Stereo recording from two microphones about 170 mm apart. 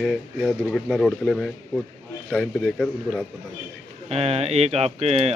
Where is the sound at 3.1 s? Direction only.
15° right (ahead or behind).